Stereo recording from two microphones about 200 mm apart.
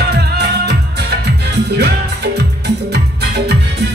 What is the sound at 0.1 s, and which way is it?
Music, 55° right (ahead or behind).